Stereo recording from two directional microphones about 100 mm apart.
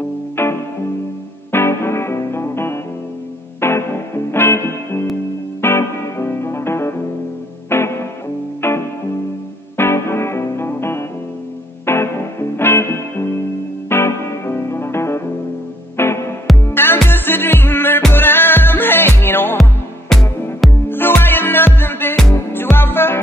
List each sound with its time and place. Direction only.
0.4 s music: 20° left (ahead or behind)
19.5 s music: centre (ahead or behind)
20.9 s music: 20° left (ahead or behind)